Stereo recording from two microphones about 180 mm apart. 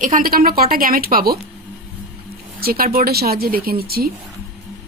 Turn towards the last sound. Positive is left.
turn(degrees=-60)  # may be behind; listen again after turning